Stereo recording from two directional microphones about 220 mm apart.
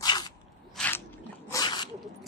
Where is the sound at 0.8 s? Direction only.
10° left (ahead or behind).